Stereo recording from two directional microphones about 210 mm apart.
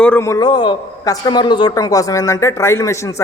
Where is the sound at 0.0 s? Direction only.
10° left (ahead or behind).